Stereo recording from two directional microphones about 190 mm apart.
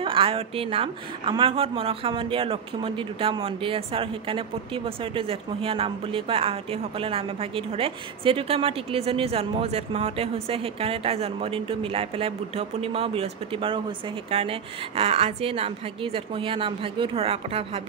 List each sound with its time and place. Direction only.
0.0 s a woman's voice: 30° right (ahead or behind)